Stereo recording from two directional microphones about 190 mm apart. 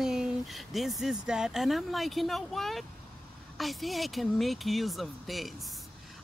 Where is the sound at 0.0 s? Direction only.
5° right (ahead or behind).